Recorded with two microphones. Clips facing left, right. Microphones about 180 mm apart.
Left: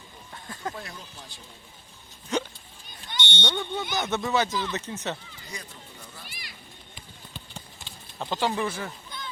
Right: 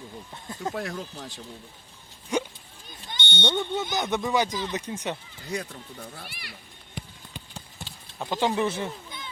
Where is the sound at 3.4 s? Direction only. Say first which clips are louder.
Right 4 dB; 20° right (ahead or behind).